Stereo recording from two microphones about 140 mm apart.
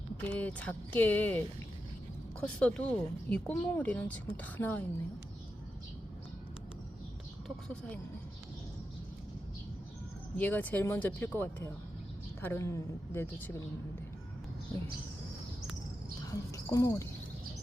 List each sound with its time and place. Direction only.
0.2 s a woman's voice: 10° left (ahead or behind)
7.4 s a woman's voice: 10° left (ahead or behind)
10.3 s a woman's voice: 10° left (ahead or behind)
16.5 s speech: 20° left (ahead or behind)